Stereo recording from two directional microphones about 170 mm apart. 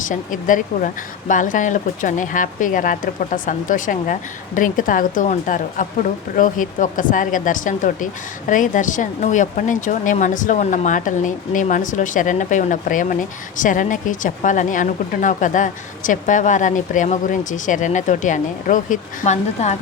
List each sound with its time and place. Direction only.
0.0 s speech: 50° left (ahead or behind)